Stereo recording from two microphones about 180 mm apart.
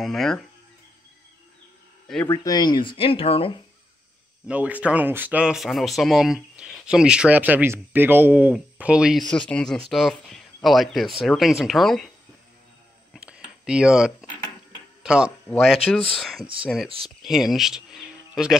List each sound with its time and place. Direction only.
0.0 s speech: centre (ahead or behind)
2.0 s speech: 10° left (ahead or behind); by 3.5 s 30° left (ahead or behind)
4.5 s speech: 10° right (ahead or behind)
13.1 s a sound: 5° right (ahead or behind)
15.0 s speech: 5° right (ahead or behind)